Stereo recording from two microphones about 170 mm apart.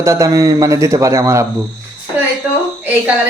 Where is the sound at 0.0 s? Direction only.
15° right (ahead or behind).